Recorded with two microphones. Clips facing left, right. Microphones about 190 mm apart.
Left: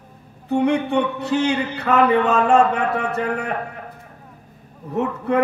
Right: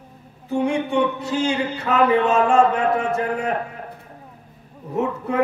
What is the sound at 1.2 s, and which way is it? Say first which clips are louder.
Speech: left 2 dB; 65° left (ahead or behind).